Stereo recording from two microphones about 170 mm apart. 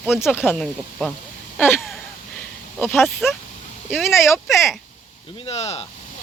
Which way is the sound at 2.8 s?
5° left (ahead or behind).